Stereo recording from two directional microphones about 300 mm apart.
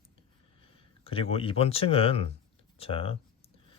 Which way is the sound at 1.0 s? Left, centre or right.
Centre.